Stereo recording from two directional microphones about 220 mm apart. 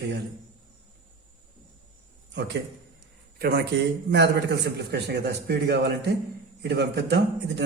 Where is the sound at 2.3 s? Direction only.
55° right (ahead or behind).